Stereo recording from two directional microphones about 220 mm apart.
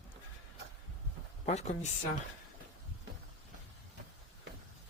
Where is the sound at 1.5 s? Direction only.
30° left (ahead or behind).